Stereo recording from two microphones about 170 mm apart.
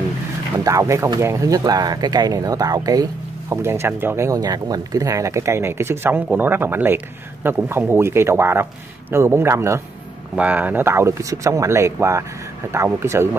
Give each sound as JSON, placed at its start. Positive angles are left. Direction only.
{"t": 0.7, "sound": "speech", "side_deg": -20}